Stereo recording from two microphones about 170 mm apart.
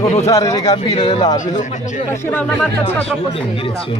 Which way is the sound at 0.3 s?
20° left (ahead or behind).